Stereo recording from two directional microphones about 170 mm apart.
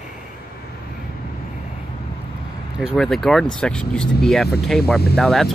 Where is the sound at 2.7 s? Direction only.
Centre (ahead or behind).